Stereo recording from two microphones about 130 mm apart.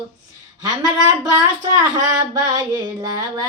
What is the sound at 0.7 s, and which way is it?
Speech, 30° right (ahead or behind).